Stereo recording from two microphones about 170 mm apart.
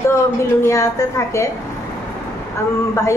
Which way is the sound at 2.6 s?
15° left (ahead or behind).